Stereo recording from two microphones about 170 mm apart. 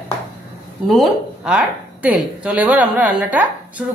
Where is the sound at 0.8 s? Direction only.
Centre (ahead or behind).